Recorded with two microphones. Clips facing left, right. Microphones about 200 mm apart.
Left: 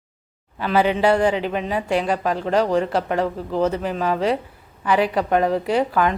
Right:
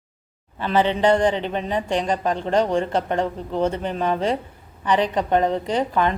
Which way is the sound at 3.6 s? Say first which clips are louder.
Left 1 dB; 30° right (ahead or behind).